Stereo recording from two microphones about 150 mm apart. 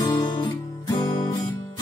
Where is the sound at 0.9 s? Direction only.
25° left (ahead or behind).